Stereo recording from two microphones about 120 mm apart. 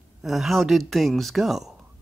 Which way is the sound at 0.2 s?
Centre (ahead or behind).